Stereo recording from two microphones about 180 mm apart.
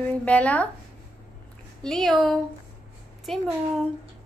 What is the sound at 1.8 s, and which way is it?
Speech, centre (ahead or behind).